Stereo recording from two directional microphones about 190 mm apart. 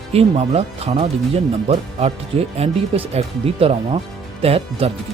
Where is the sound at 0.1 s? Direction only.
30° right (ahead or behind).